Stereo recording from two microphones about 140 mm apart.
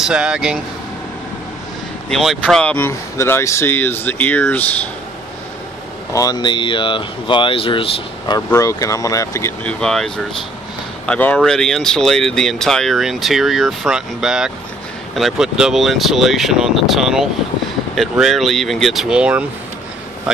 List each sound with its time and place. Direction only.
0.0 s speech: 5° right (ahead or behind)
2.0 s speech: 5° left (ahead or behind)
2.9 s speech: 20° left (ahead or behind)
6.1 s speech: 30° left (ahead or behind)
8.4 s speech: 20° left (ahead or behind)
9.6 s speech: 5° left (ahead or behind)